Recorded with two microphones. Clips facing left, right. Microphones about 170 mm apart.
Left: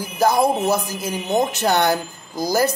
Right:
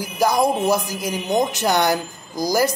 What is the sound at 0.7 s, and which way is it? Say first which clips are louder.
A man's voice: right 1 dB; 15° right (ahead or behind).